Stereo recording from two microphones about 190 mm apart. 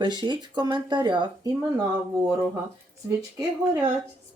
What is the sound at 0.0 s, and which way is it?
Speech, 25° right (ahead or behind).